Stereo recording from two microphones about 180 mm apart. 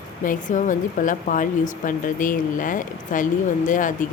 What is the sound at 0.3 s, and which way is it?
Speech, 45° left (ahead or behind).